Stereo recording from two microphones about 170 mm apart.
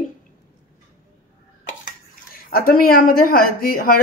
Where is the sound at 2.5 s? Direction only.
60° left (ahead or behind).